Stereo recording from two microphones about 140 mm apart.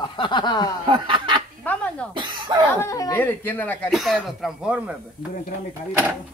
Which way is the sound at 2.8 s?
20° left (ahead or behind).